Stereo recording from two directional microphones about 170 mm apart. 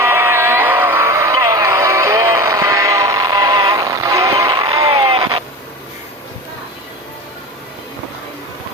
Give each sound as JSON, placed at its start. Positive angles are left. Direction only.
{"t": 0.0, "sound": "music", "side_deg": -15}